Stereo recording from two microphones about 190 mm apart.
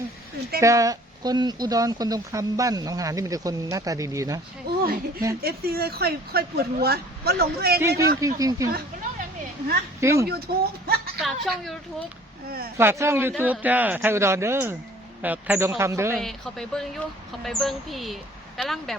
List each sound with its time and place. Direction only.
0.6 s speech: 15° right (ahead or behind)
4.7 s a woman's voice: 55° right (ahead or behind)
8.2 s speech: 15° right (ahead or behind)
10.0 s speech: 15° right (ahead or behind)
10.2 s speech: 55° right (ahead or behind)
11.2 s speech: centre (ahead or behind)
12.5 s speech: 55° right (ahead or behind)
12.7 s speech: 15° right (ahead or behind)
16.1 s speech: centre (ahead or behind)